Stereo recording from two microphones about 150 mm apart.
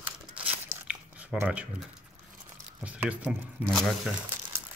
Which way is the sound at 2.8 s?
10° right (ahead or behind).